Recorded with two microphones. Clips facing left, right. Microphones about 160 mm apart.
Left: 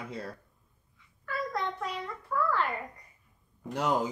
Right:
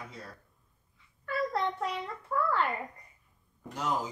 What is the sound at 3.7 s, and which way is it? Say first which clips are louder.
Speech: left 4 dB; 65° left (ahead or behind).